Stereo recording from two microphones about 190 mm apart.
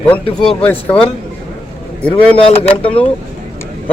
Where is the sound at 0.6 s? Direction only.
10° left (ahead or behind).